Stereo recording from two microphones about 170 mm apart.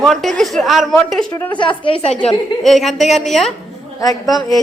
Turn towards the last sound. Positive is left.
turn(degrees=0)  # may be behind; listen again after turning